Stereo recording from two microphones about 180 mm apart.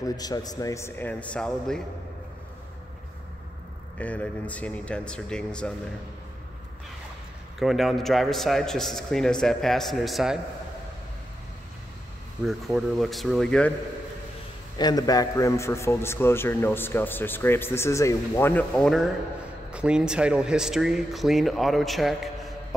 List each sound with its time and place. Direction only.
0.0 s a man's voice: 20° left (ahead or behind)
4.0 s a man's voice: 10° left (ahead or behind)
7.5 s speech: centre (ahead or behind)
12.4 s speech: centre (ahead or behind)
14.8 s a man's voice: 20° left (ahead or behind); by 22.8 s centre (ahead or behind)